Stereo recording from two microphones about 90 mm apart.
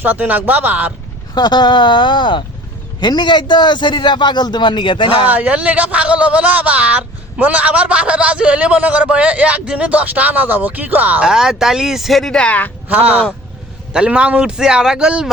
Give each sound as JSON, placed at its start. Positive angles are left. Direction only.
{"t": 0.0, "sound": "speech", "side_deg": -20}
{"t": 1.4, "sound": "a man's voice", "side_deg": 50}
{"t": 5.3, "sound": "speech", "side_deg": -15}
{"t": 11.3, "sound": "speech", "side_deg": -5}
{"t": 13.9, "sound": "speech", "side_deg": -10}